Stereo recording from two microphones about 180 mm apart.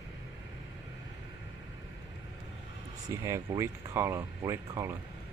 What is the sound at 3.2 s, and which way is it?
Speech, 15° right (ahead or behind).